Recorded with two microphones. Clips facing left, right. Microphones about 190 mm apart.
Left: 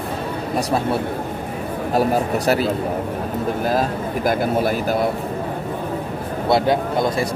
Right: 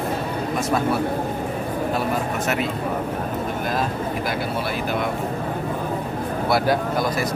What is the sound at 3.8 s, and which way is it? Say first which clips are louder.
Speech: left 3 dB; 45° left (ahead or behind).